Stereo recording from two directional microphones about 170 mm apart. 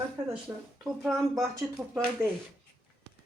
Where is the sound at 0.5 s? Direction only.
15° right (ahead or behind).